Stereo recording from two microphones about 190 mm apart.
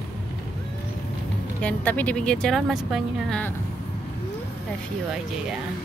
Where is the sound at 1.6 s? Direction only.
10° left (ahead or behind).